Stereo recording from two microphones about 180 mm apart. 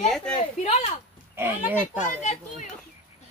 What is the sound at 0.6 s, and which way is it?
Speech, 35° left (ahead or behind).